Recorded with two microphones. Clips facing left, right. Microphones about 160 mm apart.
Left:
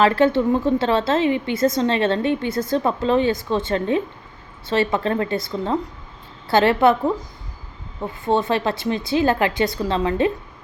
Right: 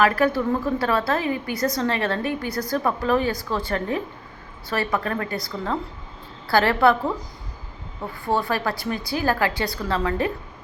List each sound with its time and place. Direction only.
0.0 s a woman's voice: 25° left (ahead or behind)
8.0 s a woman's voice: 20° left (ahead or behind)